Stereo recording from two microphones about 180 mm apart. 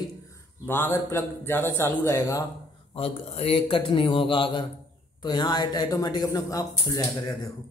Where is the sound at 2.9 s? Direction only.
35° left (ahead or behind).